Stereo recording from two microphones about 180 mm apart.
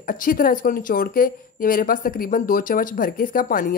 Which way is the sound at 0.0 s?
50° left (ahead or behind).